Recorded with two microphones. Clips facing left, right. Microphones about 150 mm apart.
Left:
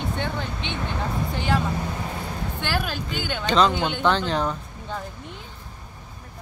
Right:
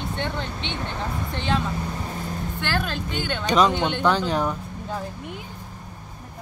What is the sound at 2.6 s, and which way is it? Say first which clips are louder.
Speech: even; 10° left (ahead or behind).